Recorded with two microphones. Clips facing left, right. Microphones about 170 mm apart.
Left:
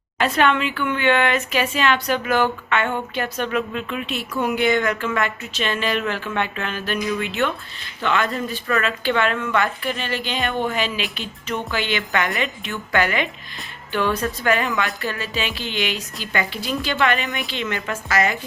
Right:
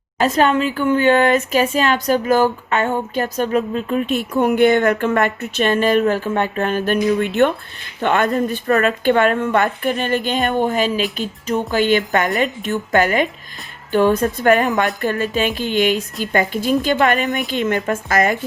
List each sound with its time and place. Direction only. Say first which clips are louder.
0.2 s speech: right 4 dB; 40° right (ahead or behind)